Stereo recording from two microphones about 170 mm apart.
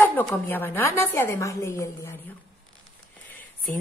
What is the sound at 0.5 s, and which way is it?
Speech, 15° left (ahead or behind).